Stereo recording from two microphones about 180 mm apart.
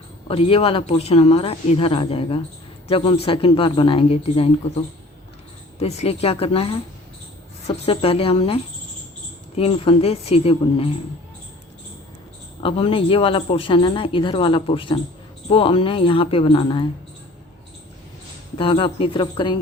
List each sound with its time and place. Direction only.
0.3 s speech: 30° left (ahead or behind)
5.8 s speech: 35° left (ahead or behind)
7.9 s speech: 30° left (ahead or behind)
12.6 s speech: 30° left (ahead or behind)
18.5 s speech: 30° left (ahead or behind)